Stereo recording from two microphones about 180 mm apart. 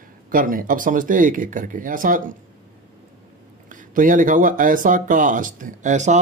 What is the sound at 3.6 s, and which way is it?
Speech, 45° right (ahead or behind).